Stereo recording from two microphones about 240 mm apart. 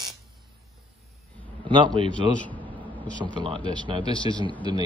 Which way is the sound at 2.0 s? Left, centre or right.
Centre.